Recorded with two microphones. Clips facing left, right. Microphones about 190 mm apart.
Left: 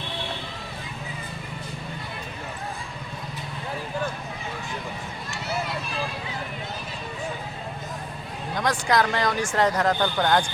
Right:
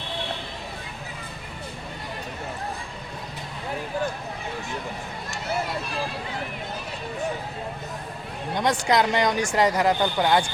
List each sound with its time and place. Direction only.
8.5 s speech: 20° right (ahead or behind)